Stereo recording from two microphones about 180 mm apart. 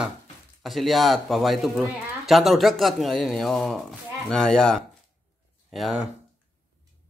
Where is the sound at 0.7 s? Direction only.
Centre (ahead or behind).